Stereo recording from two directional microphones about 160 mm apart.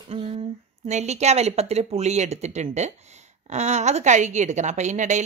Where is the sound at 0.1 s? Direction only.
40° right (ahead or behind).